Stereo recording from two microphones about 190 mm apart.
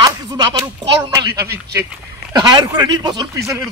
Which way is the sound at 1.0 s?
20° right (ahead or behind).